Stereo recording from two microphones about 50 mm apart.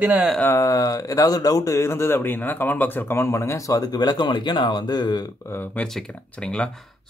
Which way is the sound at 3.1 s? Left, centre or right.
Left.